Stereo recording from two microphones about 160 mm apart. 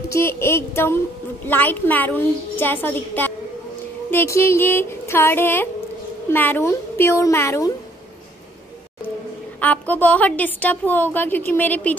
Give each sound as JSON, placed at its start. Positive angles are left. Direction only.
{"t": 0.1, "sound": "a woman's voice", "side_deg": 15}
{"t": 9.6, "sound": "a woman's voice", "side_deg": 10}